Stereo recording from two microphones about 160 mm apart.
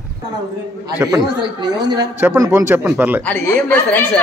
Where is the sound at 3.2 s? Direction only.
10° left (ahead or behind).